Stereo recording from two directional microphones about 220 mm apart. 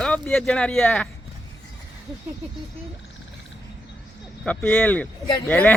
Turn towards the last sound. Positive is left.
turn(degrees=5)  # may be behind; listen again after turning